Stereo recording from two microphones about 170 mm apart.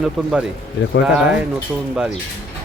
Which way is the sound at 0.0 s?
5° right (ahead or behind).